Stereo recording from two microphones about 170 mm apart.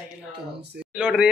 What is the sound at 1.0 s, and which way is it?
Speech, 5° right (ahead or behind).